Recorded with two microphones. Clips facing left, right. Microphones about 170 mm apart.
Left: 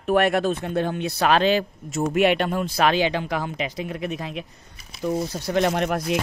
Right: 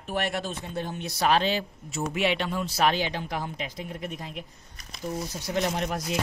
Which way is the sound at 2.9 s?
90° left.